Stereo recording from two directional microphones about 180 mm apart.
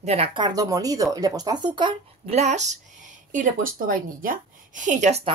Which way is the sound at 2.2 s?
40° right (ahead or behind).